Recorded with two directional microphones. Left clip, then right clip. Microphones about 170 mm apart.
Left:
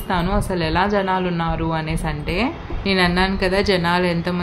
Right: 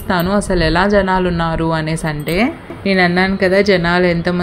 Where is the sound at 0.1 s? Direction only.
35° right (ahead or behind).